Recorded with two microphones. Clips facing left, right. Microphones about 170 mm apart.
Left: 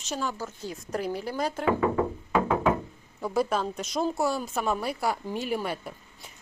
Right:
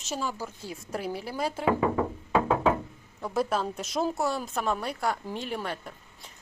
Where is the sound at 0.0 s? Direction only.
5° right (ahead or behind).